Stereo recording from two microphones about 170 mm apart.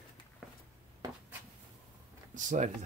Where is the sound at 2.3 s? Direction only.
50° right (ahead or behind).